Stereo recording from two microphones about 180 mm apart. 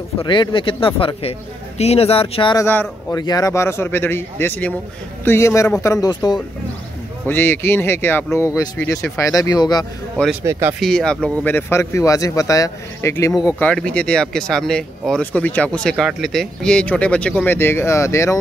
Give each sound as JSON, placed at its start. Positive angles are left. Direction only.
{"t": 0.2, "sound": "speech", "side_deg": 25}
{"t": 2.5, "sound": "speech", "side_deg": 10}
{"t": 7.2, "sound": "speech", "side_deg": 10}
{"t": 10.4, "sound": "speech", "side_deg": -15}
{"t": 10.8, "sound": "speech", "side_deg": 5}